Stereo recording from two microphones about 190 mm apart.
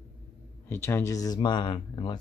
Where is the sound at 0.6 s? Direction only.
10° left (ahead or behind).